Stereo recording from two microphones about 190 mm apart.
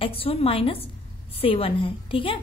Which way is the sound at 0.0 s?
30° left (ahead or behind).